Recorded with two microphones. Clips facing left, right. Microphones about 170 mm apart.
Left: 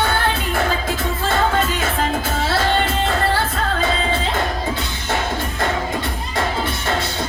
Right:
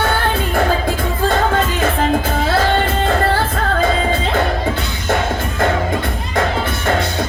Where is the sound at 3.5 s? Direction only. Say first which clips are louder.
Right 4 dB; 50° right (ahead or behind).